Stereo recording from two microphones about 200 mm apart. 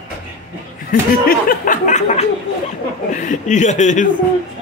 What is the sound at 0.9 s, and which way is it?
Speech, 45° left (ahead or behind).